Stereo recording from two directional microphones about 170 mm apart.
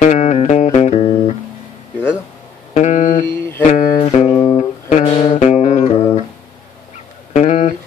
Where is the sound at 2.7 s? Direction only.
45° left (ahead or behind).